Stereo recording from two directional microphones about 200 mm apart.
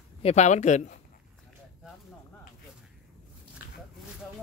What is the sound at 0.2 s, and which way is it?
Speech, 35° left (ahead or behind).